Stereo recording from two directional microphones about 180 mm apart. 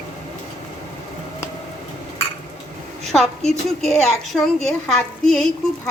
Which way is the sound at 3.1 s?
Centre (ahead or behind).